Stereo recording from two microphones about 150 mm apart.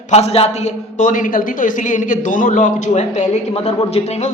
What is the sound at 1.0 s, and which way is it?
A woman's voice, 60° left (ahead or behind).